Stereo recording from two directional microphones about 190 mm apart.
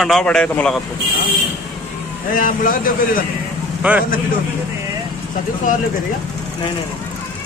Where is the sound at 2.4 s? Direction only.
45° left (ahead or behind).